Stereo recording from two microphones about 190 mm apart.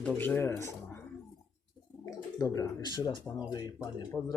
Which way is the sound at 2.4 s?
20° left (ahead or behind).